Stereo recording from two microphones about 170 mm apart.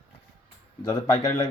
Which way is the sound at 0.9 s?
25° left (ahead or behind).